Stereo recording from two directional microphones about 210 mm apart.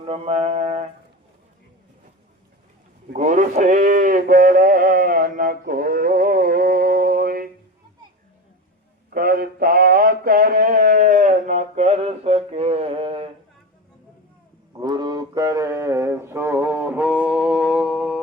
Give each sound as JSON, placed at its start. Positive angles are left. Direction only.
{"t": 0.0, "sound": "speech", "side_deg": -30}
{"t": 3.1, "sound": "speech", "side_deg": -35}
{"t": 9.0, "sound": "mantra", "side_deg": -45}
{"t": 14.8, "sound": "mantra", "side_deg": -20}